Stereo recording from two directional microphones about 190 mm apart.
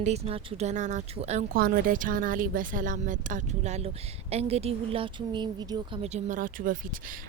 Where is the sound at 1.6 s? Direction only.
45° right (ahead or behind).